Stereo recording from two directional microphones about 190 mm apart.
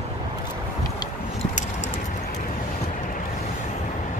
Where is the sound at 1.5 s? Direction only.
40° left (ahead or behind).